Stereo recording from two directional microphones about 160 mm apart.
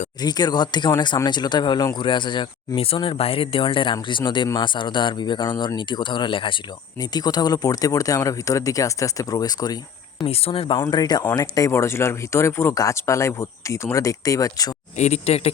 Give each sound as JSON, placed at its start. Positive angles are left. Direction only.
{"t": 0.2, "sound": "speech", "side_deg": 25}
{"t": 10.2, "sound": "speech", "side_deg": 35}
{"t": 14.9, "sound": "speech", "side_deg": 45}